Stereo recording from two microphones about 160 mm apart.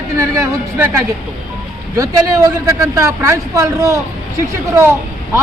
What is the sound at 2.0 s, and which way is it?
A man's voice, 20° right (ahead or behind).